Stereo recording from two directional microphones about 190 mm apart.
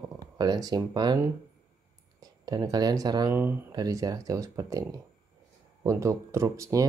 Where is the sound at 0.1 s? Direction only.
20° right (ahead or behind).